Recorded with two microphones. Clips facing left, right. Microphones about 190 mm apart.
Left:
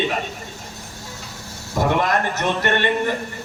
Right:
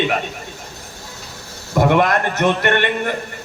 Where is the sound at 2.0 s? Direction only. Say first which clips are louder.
Right 4 dB; 60° right (ahead or behind).